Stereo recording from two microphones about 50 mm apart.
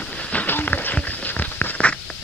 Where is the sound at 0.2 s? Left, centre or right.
Left.